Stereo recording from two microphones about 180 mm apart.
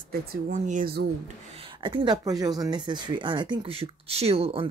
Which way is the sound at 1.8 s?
25° right (ahead or behind).